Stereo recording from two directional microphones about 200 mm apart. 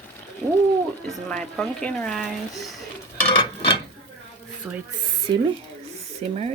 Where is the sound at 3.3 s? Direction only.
25° left (ahead or behind).